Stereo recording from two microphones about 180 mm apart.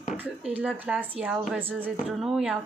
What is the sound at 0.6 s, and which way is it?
Speech, 10° right (ahead or behind).